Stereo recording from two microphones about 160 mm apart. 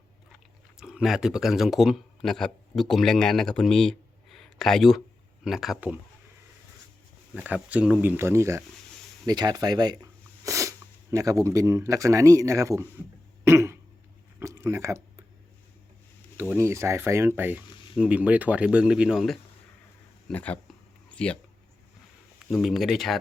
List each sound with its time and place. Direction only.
0.8 s a man's voice: 5° right (ahead or behind)
7.3 s speech: 10° right (ahead or behind)
13.4 s cough: 15° right (ahead or behind)
14.3 s a sound: 15° right (ahead or behind)
16.4 s speech: 15° right (ahead or behind); by 21.3 s 5° left (ahead or behind)
22.4 s speech: centre (ahead or behind)